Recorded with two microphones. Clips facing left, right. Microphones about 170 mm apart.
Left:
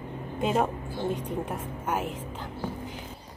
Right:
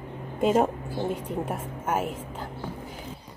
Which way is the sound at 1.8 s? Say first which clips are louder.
Right 3 dB; 5° right (ahead or behind).